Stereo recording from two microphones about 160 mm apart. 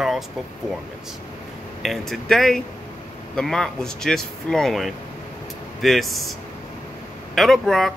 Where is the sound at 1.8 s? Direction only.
Centre (ahead or behind).